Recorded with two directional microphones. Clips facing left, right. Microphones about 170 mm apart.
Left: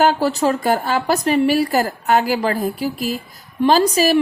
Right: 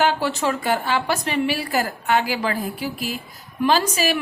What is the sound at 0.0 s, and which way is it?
A woman's voice, 40° left (ahead or behind).